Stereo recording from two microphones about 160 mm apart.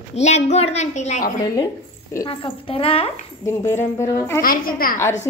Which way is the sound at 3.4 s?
15° left (ahead or behind).